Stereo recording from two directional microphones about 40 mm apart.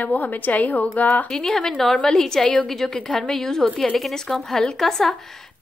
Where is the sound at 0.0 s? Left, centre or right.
Left.